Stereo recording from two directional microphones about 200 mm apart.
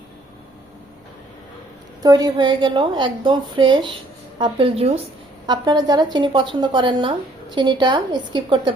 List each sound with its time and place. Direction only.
2.0 s a woman's voice: 20° right (ahead or behind)